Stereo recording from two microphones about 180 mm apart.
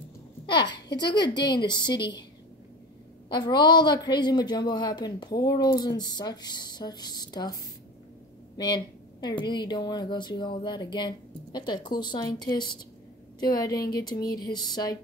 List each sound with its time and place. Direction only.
0.5 s a sound: 25° left (ahead or behind)
0.9 s speech: 25° left (ahead or behind)
3.4 s speech: 25° left (ahead or behind)
8.5 s speech: 25° left (ahead or behind)